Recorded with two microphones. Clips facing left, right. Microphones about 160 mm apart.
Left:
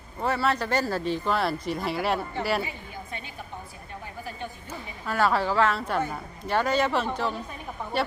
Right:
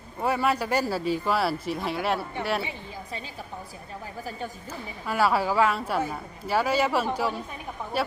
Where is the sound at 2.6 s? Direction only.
30° right (ahead or behind).